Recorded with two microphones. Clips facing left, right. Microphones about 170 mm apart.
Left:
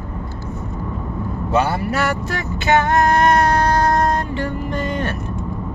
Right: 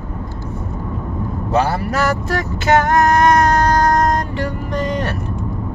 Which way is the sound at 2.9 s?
45° right (ahead or behind).